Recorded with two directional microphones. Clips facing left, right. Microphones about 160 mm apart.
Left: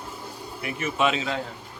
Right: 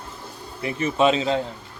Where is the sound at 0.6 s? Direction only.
30° right (ahead or behind).